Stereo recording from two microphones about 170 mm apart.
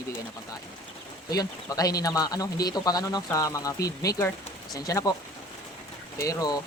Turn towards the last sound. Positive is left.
turn(degrees=20)  # may be behind; listen again after turning